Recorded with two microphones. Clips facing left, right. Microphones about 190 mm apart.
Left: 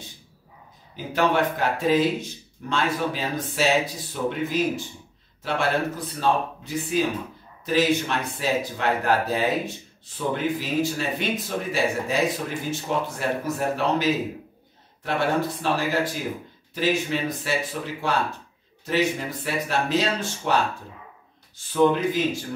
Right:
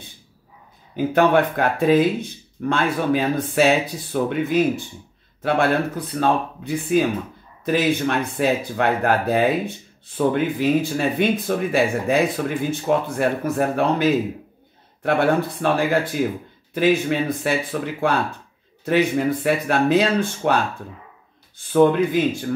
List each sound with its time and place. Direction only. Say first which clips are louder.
0.9 s speech: right 6 dB; 55° right (ahead or behind)
21.7 s speech: right 4 dB; 55° right (ahead or behind)